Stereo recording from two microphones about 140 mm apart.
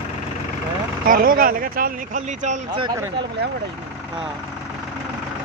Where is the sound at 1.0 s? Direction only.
90° right.